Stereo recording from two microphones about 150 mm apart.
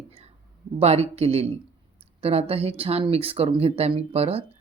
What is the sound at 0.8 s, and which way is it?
Speech, 45° right (ahead or behind).